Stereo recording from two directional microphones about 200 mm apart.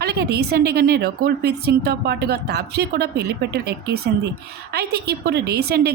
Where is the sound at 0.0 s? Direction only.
55° right (ahead or behind).